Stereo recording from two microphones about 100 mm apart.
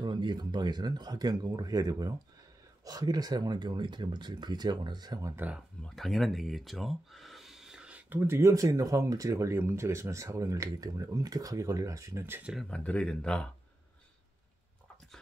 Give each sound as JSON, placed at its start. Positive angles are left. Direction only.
{"t": 0.0, "sound": "speech", "side_deg": -50}
{"t": 5.3, "sound": "speech", "side_deg": -20}
{"t": 5.9, "sound": "speech", "side_deg": 0}
{"t": 8.1, "sound": "speech", "side_deg": -25}
{"t": 12.6, "sound": "speech", "side_deg": 10}